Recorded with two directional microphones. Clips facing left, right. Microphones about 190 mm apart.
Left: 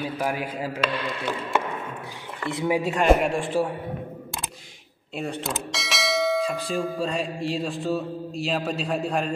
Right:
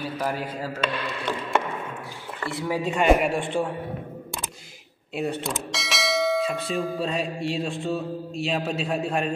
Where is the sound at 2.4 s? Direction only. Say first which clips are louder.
Left 3 dB; 15° left (ahead or behind).